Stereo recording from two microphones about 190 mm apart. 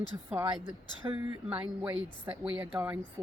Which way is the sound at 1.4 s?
5° right (ahead or behind).